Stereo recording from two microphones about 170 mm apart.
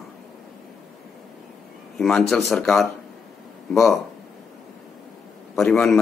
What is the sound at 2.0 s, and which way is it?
Speech, centre (ahead or behind).